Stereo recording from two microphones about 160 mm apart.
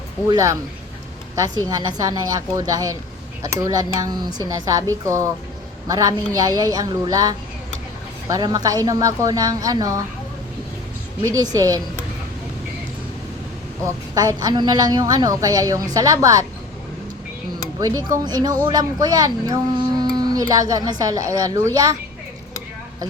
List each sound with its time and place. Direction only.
0.3 s speech: 20° right (ahead or behind)
11.2 s speech: 20° right (ahead or behind)
13.8 s speech: 20° right (ahead or behind)
17.7 s speech: 20° right (ahead or behind)